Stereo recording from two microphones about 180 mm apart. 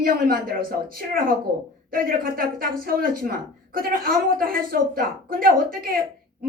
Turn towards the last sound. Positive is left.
turn(degrees=-55)  # may be behind; listen again after turning